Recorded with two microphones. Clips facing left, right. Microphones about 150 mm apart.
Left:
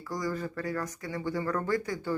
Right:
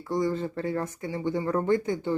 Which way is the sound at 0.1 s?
25° right (ahead or behind).